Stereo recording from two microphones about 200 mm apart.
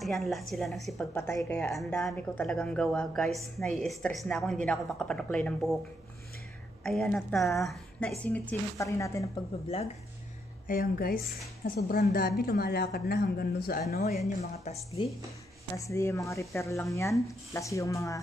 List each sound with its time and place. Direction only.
0.0 s a woman's voice: centre (ahead or behind)
1.1 s a woman's voice: 15° left (ahead or behind)
6.8 s a woman's voice: 5° left (ahead or behind)
10.7 s a woman's voice: 50° left (ahead or behind)
15.8 s a woman's voice: 15° left (ahead or behind)